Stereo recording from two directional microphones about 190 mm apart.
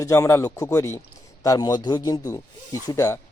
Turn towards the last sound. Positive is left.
turn(degrees=15)  # may be behind; listen again after turning